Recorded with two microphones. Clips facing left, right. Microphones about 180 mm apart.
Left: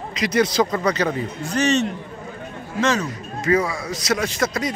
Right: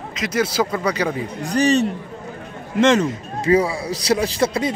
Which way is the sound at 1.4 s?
35° right (ahead or behind).